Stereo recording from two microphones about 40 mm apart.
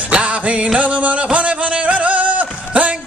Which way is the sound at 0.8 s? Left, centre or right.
Right.